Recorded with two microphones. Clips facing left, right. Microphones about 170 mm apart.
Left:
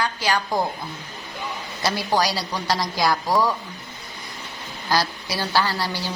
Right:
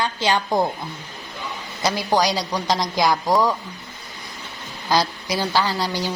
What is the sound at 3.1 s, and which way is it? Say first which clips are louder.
Speech: right 1 dB; 15° right (ahead or behind).